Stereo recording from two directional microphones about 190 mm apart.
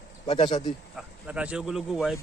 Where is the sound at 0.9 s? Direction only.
5° right (ahead or behind).